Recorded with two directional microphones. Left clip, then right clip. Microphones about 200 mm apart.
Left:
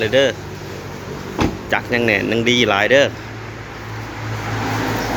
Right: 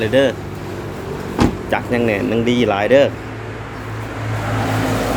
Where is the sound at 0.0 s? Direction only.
Centre (ahead or behind).